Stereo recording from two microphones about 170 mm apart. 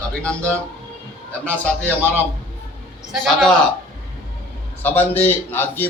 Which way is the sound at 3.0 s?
Centre (ahead or behind).